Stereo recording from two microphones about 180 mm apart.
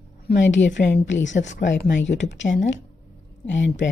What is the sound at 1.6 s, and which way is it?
A woman's voice, 80° left.